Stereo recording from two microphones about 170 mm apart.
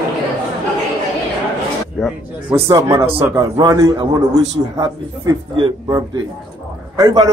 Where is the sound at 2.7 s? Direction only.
20° right (ahead or behind).